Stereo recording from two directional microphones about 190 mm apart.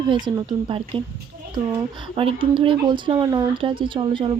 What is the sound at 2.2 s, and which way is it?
Speech, 30° right (ahead or behind).